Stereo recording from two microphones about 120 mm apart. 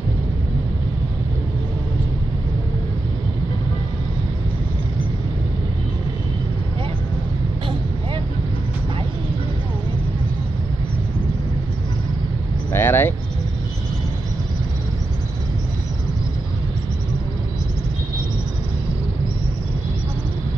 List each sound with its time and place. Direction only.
12.7 s vehicle: 20° left (ahead or behind)